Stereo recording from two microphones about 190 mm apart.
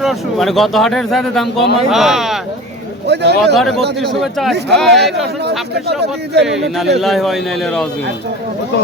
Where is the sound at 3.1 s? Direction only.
65° right (ahead or behind).